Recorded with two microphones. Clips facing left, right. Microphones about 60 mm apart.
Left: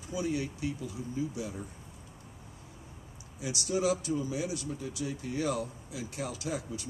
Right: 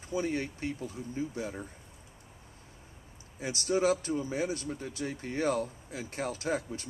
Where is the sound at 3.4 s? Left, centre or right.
Right.